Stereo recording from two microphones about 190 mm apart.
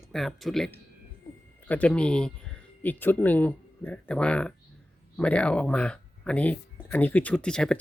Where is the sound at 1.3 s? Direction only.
20° left (ahead or behind).